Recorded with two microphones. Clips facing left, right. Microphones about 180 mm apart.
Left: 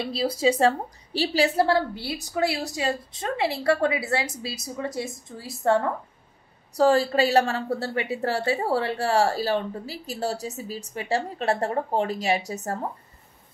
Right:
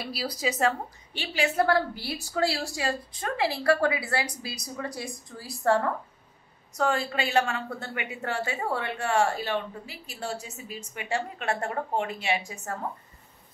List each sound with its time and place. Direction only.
0.0 s a woman's voice: 25° left (ahead or behind)
6.7 s a woman's voice: 35° left (ahead or behind)